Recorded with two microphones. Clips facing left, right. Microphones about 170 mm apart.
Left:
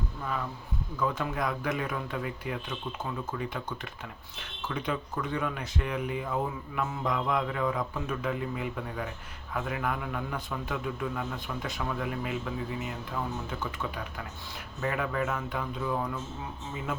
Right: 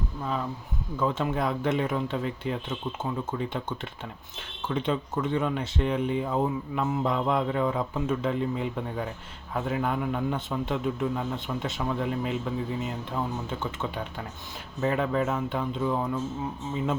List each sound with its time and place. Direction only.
0.9 s speech: 25° right (ahead or behind)